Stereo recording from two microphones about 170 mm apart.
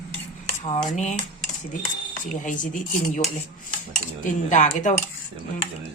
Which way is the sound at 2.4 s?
50° left (ahead or behind).